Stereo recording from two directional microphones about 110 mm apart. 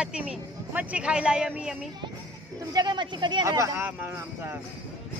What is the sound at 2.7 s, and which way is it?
Speech, 45° right (ahead or behind).